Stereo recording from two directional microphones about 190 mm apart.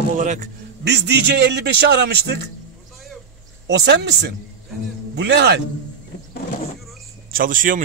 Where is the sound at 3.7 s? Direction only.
65° right (ahead or behind).